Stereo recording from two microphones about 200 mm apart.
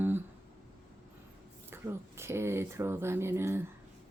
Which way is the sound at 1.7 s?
10° right (ahead or behind).